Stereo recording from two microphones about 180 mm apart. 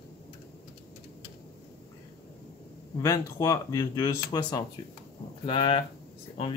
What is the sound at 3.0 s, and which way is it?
Speech, 15° left (ahead or behind).